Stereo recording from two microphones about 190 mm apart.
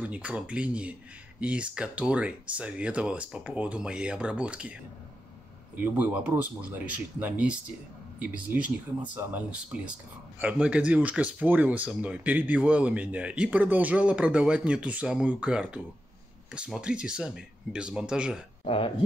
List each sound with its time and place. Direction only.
0.0 s speech: 5° right (ahead or behind)
5.8 s speech: 10° right (ahead or behind)
18.6 s speech: 30° left (ahead or behind)